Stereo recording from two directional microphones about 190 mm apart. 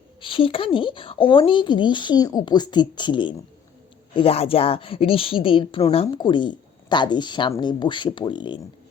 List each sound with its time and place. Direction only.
0.2 s a woman's voice: 25° left (ahead or behind)